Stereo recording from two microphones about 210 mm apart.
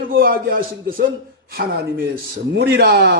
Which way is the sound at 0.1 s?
45° right (ahead or behind).